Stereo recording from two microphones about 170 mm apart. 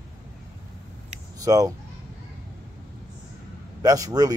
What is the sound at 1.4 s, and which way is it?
Speech, 20° right (ahead or behind).